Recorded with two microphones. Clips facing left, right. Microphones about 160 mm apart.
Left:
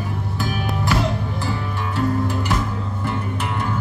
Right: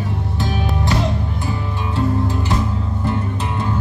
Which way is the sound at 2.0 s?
20° right (ahead or behind).